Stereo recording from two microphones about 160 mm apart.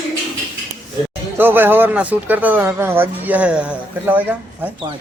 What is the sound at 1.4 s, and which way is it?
Speech, 10° right (ahead or behind).